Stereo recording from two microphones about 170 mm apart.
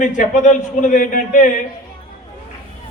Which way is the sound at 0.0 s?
45° left (ahead or behind).